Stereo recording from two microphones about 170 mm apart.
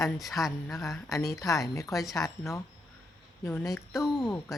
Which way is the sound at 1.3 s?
20° left (ahead or behind).